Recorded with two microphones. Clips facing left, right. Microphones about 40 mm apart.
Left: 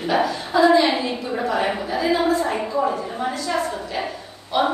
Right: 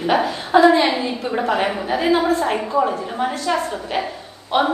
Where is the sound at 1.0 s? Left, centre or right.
Centre.